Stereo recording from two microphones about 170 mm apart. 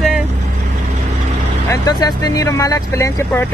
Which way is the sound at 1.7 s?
25° left (ahead or behind).